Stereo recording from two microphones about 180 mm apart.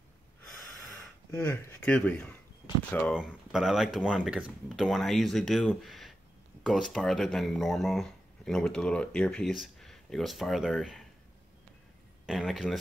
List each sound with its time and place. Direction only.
0.7 s speech: 5° left (ahead or behind)
3.2 s speech: 5° right (ahead or behind)
12.3 s speech: centre (ahead or behind)